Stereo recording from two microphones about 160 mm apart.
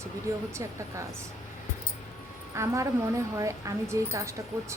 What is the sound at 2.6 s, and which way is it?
Speech, 20° right (ahead or behind).